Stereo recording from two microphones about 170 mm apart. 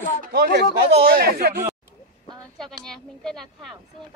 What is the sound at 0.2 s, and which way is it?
Speech, 70° right (ahead or behind).